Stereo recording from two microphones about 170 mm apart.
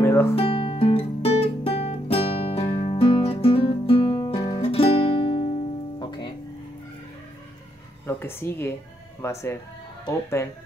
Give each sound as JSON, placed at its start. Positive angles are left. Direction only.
{"t": 0.0, "sound": "music", "side_deg": 15}
{"t": 0.4, "sound": "music", "side_deg": 35}
{"t": 4.6, "sound": "music", "side_deg": 35}
{"t": 8.1, "sound": "a sound", "side_deg": 15}
{"t": 9.2, "sound": "speech", "side_deg": 15}